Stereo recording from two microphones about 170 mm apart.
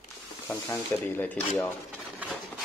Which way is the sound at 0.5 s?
15° left (ahead or behind).